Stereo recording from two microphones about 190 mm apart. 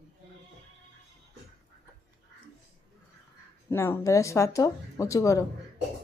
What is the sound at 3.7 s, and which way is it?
Speech, 15° left (ahead or behind).